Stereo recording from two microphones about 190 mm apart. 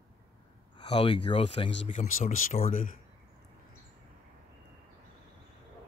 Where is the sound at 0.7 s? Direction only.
25° left (ahead or behind).